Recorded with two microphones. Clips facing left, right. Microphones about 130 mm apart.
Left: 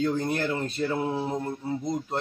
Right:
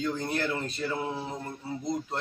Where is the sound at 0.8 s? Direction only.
40° left (ahead or behind).